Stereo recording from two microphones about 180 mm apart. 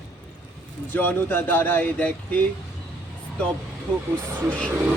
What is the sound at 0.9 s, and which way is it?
Speech, 10° left (ahead or behind).